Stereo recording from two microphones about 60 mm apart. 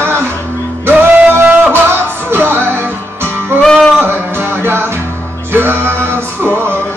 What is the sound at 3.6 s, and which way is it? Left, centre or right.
Music, centre.